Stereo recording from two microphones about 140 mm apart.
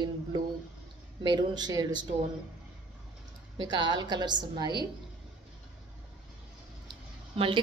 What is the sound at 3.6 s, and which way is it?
A woman's voice, 30° right (ahead or behind).